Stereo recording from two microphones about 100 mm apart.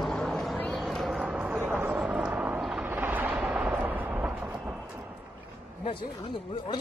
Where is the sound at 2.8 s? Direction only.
20° right (ahead or behind).